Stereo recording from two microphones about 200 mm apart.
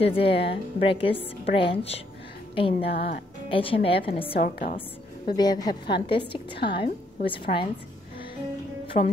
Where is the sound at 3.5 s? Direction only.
25° left (ahead or behind).